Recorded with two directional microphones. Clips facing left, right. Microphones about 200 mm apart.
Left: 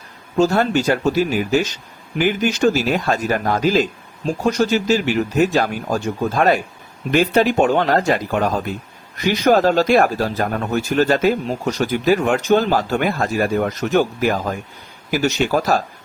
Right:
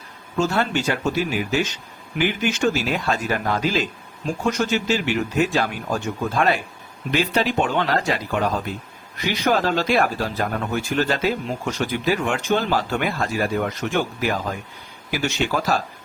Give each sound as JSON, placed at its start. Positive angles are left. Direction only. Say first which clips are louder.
{"t": 0.3, "sound": "speech", "louder": "left 6 dB", "side_deg": 40}